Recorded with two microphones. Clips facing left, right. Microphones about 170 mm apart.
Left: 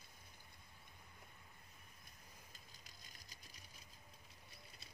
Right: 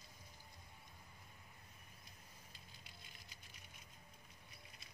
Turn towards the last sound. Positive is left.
turn(degrees=35)  # may be behind; listen again after turning